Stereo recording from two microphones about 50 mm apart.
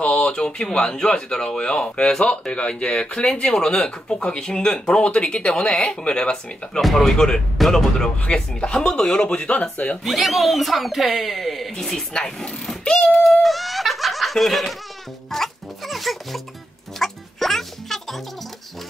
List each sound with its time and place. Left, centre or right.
0.0 s speech: centre
6.8 s speech: centre
7.1 s speech: centre
7.5 s speech: centre
8.0 s speech: left
10.0 s speech: centre
13.4 s snicker: centre
15.3 s music: centre